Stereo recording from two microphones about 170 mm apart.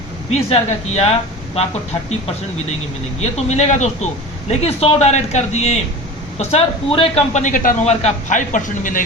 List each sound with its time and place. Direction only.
0.3 s a man's voice: 40° left (ahead or behind)
3.2 s a man's voice: 40° left (ahead or behind)